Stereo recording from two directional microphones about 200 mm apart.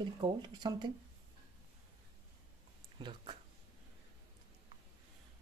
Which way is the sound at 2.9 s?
25° right (ahead or behind).